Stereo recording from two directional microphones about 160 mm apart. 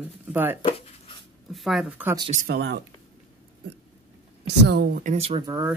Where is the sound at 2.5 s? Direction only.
90° right.